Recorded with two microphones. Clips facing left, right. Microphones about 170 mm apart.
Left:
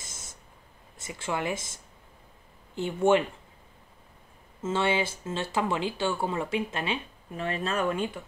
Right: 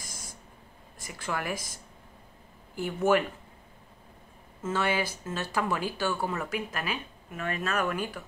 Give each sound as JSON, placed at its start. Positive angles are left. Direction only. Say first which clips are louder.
{"t": 0.0, "sound": "a sound", "louder": "right 2 dB", "side_deg": 25}
{"t": 0.9, "sound": "speech", "louder": "left 2 dB", "side_deg": 25}
{"t": 4.6, "sound": "speech", "louder": "left 2 dB", "side_deg": 25}